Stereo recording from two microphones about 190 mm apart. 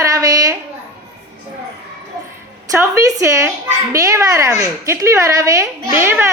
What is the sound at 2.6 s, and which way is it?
A woman's voice, 15° right (ahead or behind).